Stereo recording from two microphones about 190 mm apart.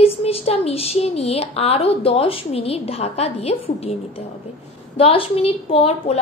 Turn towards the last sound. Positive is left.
turn(degrees=30)  # may be behind; listen again after turning